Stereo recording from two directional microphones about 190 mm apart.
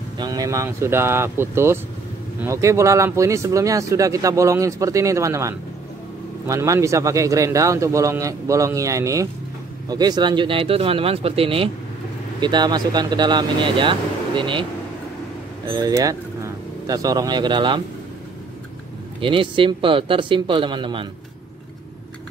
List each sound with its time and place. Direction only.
0.2 s speech: 20° right (ahead or behind)
15.7 s speech: 20° right (ahead or behind)
19.2 s speech: 25° right (ahead or behind)